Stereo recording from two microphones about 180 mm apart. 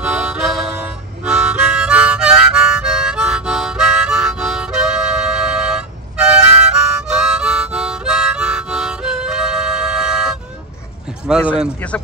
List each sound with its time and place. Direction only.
0.0 s harmonica: 5° right (ahead or behind)
11.3 s speech: centre (ahead or behind)